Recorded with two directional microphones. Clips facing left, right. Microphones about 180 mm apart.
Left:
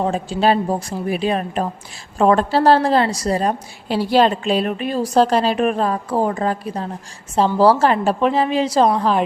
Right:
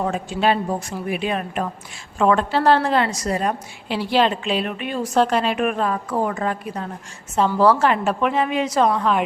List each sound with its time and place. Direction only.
0.0 s a woman's voice: 30° left (ahead or behind)